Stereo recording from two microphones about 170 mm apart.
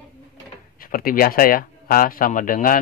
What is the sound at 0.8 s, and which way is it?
Speech, 55° left (ahead or behind).